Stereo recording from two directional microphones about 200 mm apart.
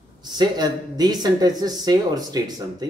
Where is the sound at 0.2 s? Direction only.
20° right (ahead or behind).